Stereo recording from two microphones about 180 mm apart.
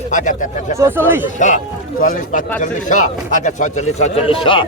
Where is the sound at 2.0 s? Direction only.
45° left (ahead or behind).